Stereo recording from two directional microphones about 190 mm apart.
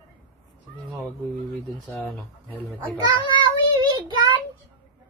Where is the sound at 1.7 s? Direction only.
Centre (ahead or behind).